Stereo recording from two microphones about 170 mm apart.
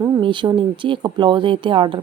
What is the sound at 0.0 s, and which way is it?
A woman's voice, 30° right (ahead or behind).